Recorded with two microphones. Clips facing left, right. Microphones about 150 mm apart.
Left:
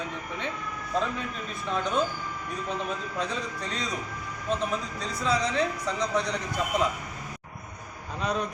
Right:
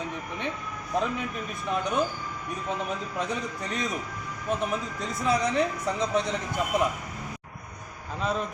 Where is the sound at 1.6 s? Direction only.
15° right (ahead or behind).